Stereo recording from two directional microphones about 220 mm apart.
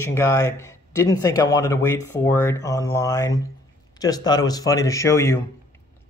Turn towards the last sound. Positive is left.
turn(degrees=10)  # may be behind; listen again after turning